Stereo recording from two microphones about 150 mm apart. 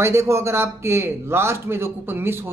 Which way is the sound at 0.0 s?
20° right (ahead or behind).